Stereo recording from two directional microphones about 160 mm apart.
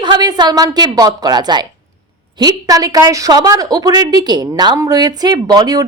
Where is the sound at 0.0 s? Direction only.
25° right (ahead or behind).